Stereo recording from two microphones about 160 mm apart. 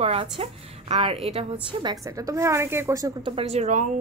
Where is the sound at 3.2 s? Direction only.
40° right (ahead or behind).